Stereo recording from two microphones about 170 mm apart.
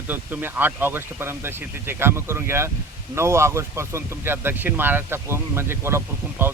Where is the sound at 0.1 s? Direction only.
10° right (ahead or behind).